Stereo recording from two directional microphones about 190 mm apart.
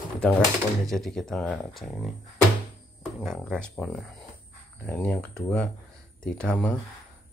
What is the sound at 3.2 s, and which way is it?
Speech, 5° left (ahead or behind).